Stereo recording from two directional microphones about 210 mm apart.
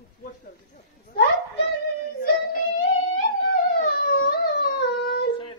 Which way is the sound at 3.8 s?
45° left (ahead or behind).